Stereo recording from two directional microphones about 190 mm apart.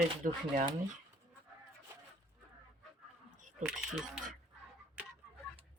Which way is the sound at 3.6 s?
Centre (ahead or behind).